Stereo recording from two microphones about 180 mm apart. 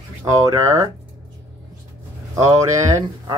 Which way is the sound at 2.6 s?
20° right (ahead or behind).